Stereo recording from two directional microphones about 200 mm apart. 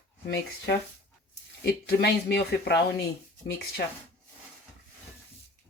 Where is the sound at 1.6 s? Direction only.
55° left (ahead or behind).